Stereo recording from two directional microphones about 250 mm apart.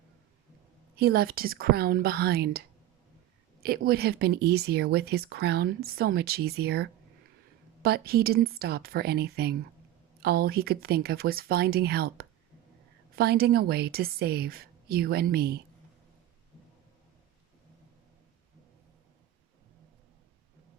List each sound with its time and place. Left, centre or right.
0.9 s speech: right